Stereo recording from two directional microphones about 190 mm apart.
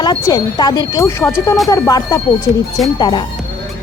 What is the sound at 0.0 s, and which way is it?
Speech, 25° left (ahead or behind).